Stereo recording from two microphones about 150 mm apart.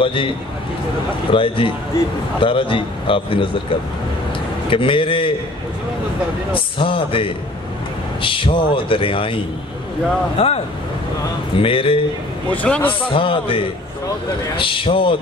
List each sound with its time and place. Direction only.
0.0 s speech: 35° left (ahead or behind)
1.3 s speech: 35° left (ahead or behind)
4.6 s speech: 35° left (ahead or behind)
6.5 s speech: 35° left (ahead or behind)
11.6 s speech: 35° left (ahead or behind)
12.4 s speech: 10° left (ahead or behind)
13.1 s speech: 35° left (ahead or behind)